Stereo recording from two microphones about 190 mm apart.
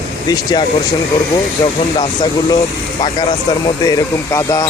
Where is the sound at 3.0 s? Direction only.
25° left (ahead or behind).